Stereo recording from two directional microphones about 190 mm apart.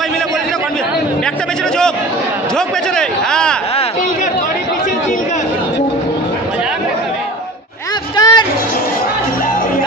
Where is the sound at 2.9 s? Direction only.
5° left (ahead or behind).